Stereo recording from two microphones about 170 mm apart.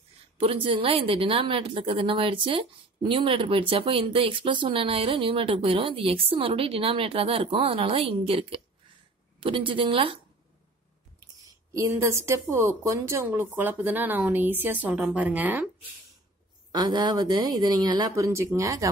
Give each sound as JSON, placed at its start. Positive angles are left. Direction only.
{"t": 0.4, "sound": "a woman's voice", "side_deg": -35}
{"t": 11.4, "sound": "speech", "side_deg": -20}
{"t": 16.7, "sound": "speech", "side_deg": -25}